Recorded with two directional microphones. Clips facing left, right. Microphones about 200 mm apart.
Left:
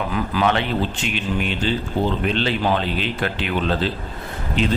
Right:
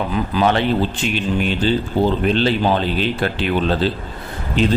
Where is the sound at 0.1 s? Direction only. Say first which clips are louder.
Right 2 dB; 30° right (ahead or behind).